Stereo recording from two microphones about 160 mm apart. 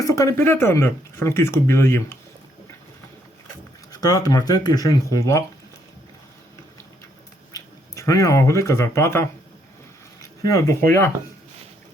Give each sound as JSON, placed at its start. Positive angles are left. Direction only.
{"t": 0.0, "sound": "speech", "side_deg": 20}
{"t": 3.9, "sound": "speech", "side_deg": 25}
{"t": 7.5, "sound": "speech", "side_deg": 20}
{"t": 10.2, "sound": "a sound", "side_deg": 20}
{"t": 10.8, "sound": "speech", "side_deg": 15}